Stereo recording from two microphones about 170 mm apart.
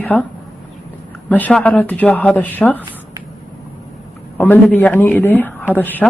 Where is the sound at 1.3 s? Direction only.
10° left (ahead or behind).